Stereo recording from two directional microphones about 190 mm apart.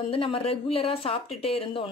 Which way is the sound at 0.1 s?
30° left (ahead or behind).